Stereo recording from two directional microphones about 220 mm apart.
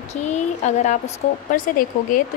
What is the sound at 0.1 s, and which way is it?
Speech, 30° left (ahead or behind).